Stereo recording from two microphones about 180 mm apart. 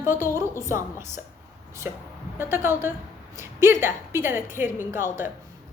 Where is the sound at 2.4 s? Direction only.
15° right (ahead or behind).